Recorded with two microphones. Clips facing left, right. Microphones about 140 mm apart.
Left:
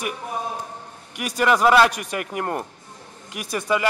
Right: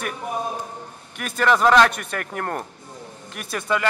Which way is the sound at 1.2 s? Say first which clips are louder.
Even; 10° left (ahead or behind).